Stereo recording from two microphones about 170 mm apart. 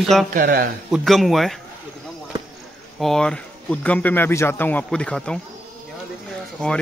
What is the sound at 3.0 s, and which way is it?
Speech, 5° left (ahead or behind).